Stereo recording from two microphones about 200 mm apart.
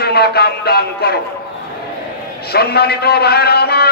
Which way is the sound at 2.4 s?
50° left (ahead or behind).